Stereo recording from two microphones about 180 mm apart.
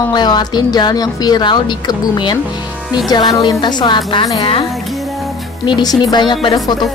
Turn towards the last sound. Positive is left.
turn(degrees=25)  # may be behind; listen again after turning